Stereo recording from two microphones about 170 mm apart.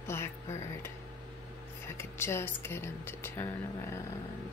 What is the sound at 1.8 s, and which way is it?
Speech, 15° left (ahead or behind).